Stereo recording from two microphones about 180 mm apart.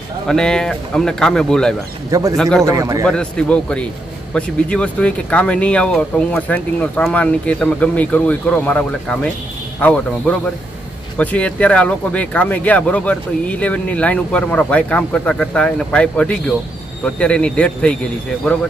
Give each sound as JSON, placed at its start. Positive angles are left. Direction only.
{"t": 0.3, "sound": "speech", "side_deg": 5}
{"t": 2.0, "sound": "a man's voice", "side_deg": -20}
{"t": 2.3, "sound": "speech", "side_deg": 5}
{"t": 2.6, "sound": "a man's voice", "side_deg": -20}
{"t": 3.1, "sound": "a man's voice", "side_deg": 5}